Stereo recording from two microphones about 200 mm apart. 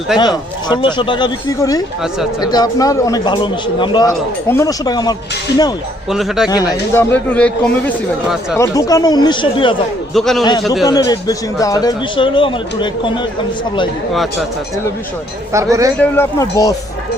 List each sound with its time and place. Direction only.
0.1 s speech: centre (ahead or behind)
0.7 s a man's voice: 25° left (ahead or behind)
6.1 s speech: centre (ahead or behind)
6.5 s a man's voice: 20° left (ahead or behind)
7.1 s speech: 5° left (ahead or behind)
8.5 s a man's voice: 15° left (ahead or behind)
10.2 s speech: centre (ahead or behind)
10.8 s a man's voice: 20° left (ahead or behind)
15.5 s speech: 15° right (ahead or behind)
16.0 s speech: 15° left (ahead or behind)